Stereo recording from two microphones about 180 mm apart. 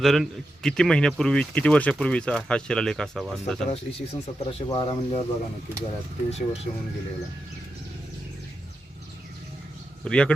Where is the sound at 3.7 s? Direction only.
35° left (ahead or behind).